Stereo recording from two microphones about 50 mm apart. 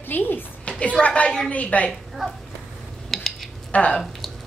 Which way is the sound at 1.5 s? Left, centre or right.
Left.